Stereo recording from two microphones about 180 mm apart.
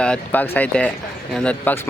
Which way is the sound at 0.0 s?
5° left (ahead or behind).